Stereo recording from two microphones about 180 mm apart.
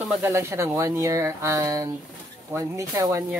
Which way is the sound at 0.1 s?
15° right (ahead or behind).